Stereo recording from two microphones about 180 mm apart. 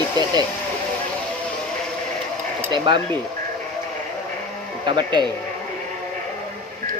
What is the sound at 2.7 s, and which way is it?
Speech, 25° right (ahead or behind).